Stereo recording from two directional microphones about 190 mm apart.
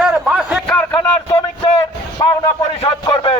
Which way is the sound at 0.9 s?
20° left (ahead or behind).